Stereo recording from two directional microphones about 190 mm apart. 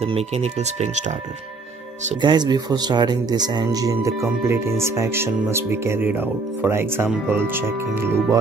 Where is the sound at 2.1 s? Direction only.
20° right (ahead or behind).